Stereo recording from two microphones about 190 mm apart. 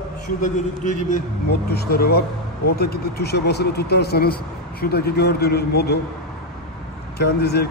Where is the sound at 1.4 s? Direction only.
55° left (ahead or behind).